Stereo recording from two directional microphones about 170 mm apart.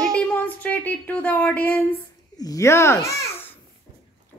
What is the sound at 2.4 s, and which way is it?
Speech, 20° left (ahead or behind).